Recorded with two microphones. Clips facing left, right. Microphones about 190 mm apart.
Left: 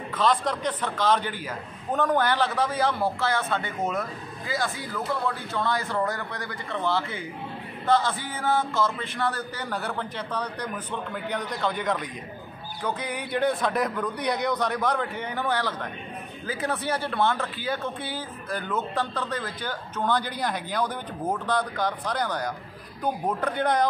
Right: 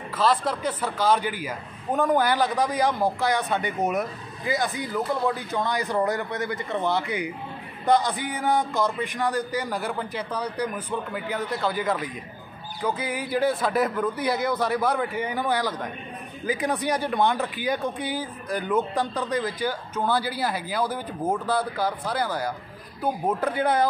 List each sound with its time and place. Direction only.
0.1 s a man's voice: 5° right (ahead or behind)